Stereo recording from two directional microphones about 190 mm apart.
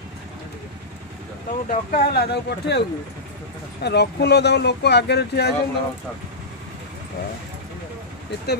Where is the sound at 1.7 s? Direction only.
45° left (ahead or behind).